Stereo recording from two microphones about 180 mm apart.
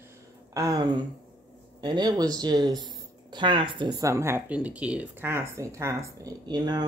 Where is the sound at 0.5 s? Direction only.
20° right (ahead or behind).